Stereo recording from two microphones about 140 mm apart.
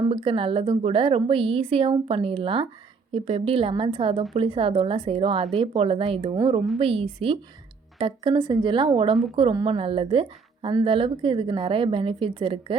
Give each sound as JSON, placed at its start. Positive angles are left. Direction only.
{"t": 0.1, "sound": "a woman's voice", "side_deg": -40}